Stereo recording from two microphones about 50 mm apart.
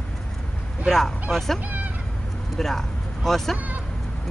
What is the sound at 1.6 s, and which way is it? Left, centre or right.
Cat, right.